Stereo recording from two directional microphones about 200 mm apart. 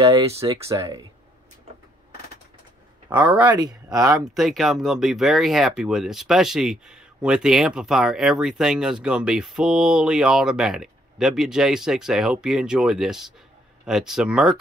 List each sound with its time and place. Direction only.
0.0 s speech: 20° right (ahead or behind)
3.1 s speech: 5° right (ahead or behind)
4.3 s speech: centre (ahead or behind)